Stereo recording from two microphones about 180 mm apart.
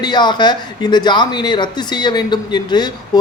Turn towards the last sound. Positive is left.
turn(degrees=25)  # may be behind; listen again after turning